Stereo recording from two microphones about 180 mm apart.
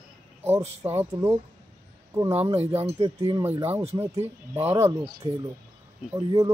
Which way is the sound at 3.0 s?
30° right (ahead or behind).